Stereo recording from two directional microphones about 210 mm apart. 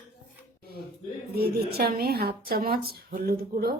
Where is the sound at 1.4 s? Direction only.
45° right (ahead or behind).